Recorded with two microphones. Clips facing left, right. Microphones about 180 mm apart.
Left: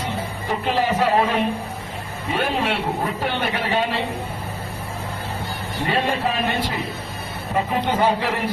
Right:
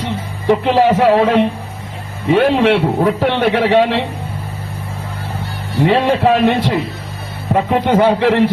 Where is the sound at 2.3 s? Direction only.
70° right (ahead or behind); by 3.8 s 90° right.